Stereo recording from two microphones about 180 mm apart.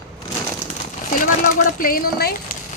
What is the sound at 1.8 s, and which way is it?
Speech, 50° left (ahead or behind).